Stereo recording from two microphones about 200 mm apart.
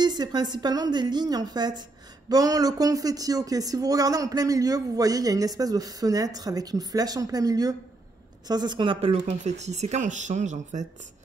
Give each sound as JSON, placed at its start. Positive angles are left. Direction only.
{"t": 0.0, "sound": "a woman's voice", "side_deg": -20}